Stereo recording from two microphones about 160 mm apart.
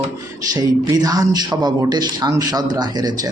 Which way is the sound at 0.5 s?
25° right (ahead or behind).